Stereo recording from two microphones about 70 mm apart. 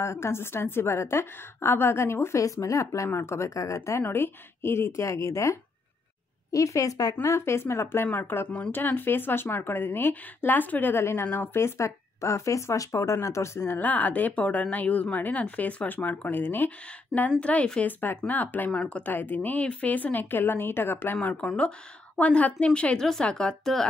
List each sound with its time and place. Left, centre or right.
0.0 s a woman's voice: left
4.0 s a woman's voice: left
7.2 s a woman's voice: left
8.1 s speech: left
8.5 s speech: centre
8.7 s a woman's voice: left
18.7 s speech: centre